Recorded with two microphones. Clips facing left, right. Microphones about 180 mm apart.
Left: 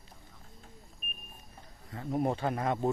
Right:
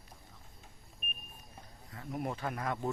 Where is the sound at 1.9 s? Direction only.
30° left (ahead or behind).